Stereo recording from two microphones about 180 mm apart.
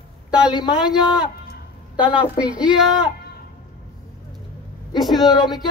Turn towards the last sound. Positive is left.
turn(degrees=0)  # may be behind; listen again after turning